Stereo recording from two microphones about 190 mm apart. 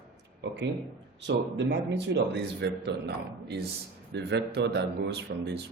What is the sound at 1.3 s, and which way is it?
A man's voice, 70° right (ahead or behind).